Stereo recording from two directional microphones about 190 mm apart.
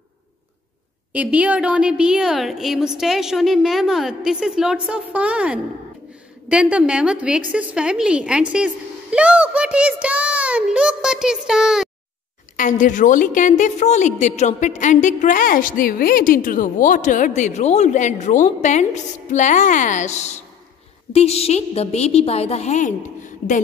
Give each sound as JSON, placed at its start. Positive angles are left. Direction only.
{"t": 1.1, "sound": "a woman's voice", "side_deg": -10}
{"t": 12.5, "sound": "a woman's voice", "side_deg": 40}